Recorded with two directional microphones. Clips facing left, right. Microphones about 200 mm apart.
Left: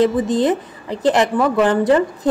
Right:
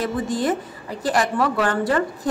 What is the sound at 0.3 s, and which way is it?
A woman's voice, 20° left (ahead or behind).